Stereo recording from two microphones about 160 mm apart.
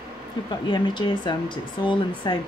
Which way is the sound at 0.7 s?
30° left (ahead or behind).